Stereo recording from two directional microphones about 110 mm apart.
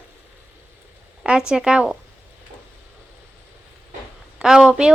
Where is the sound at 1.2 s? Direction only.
5° right (ahead or behind).